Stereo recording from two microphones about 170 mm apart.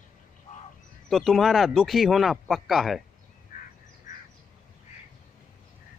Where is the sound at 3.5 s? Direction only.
55° left (ahead or behind).